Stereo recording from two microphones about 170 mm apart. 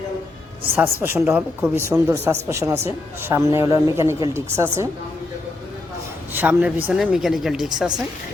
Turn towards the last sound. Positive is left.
turn(degrees=-5)  # may be behind; listen again after turning